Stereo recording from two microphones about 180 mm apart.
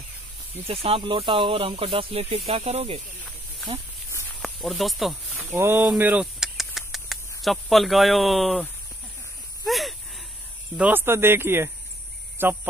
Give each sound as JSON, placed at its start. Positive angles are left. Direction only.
{"t": 0.7, "sound": "speech", "side_deg": -30}
{"t": 4.4, "sound": "speech", "side_deg": 0}
{"t": 5.4, "sound": "speech", "side_deg": -15}
{"t": 5.9, "sound": "a sound", "side_deg": -10}
{"t": 9.7, "sound": "a sound", "side_deg": 0}
{"t": 10.8, "sound": "speech", "side_deg": -10}